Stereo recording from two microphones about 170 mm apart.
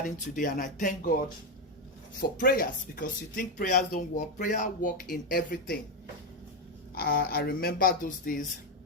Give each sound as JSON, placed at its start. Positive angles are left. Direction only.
{"t": 0.0, "sound": "speech", "side_deg": 50}
{"t": 2.4, "sound": "speech", "side_deg": 55}
{"t": 6.9, "sound": "speech", "side_deg": 60}